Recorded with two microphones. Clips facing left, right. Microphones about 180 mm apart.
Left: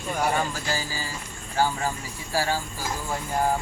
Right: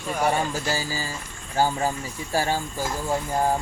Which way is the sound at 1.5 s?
20° right (ahead or behind).